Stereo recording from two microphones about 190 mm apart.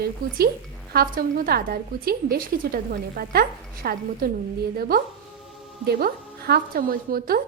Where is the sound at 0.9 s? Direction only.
50° right (ahead or behind).